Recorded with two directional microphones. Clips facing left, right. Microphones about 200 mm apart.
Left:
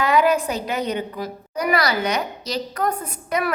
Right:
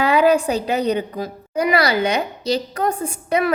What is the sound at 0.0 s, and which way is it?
A woman's voice, 30° right (ahead or behind).